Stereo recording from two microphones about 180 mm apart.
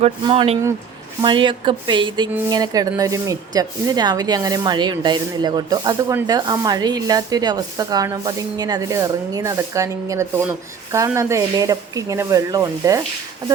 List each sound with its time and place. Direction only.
0.0 s speech: 30° right (ahead or behind)